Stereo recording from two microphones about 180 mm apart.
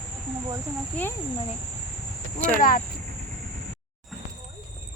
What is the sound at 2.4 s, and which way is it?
Speech, 50° left (ahead or behind).